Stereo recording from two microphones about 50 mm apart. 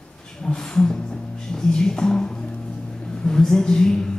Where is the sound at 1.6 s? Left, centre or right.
Centre.